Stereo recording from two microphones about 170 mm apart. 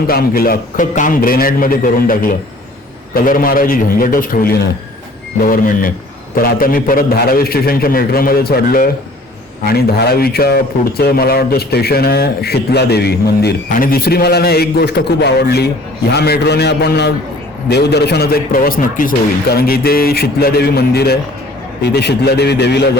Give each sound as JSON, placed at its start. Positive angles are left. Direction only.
{"t": 0.1, "sound": "speech", "side_deg": 60}
{"t": 21.8, "sound": "a man's voice", "side_deg": 80}